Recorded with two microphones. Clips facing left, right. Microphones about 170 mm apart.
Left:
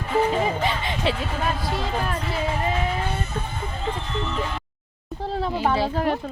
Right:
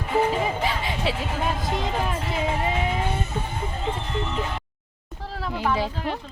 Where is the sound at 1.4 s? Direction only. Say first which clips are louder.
Even; 20° right (ahead or behind).